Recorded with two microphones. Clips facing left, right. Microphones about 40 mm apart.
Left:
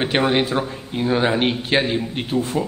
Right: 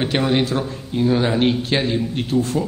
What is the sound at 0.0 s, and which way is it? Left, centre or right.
A man's voice, centre.